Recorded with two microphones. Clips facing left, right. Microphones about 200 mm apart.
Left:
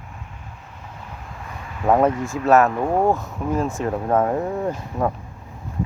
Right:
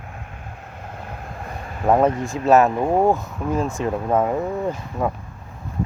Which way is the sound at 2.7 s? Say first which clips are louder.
Right 2 dB; 15° right (ahead or behind).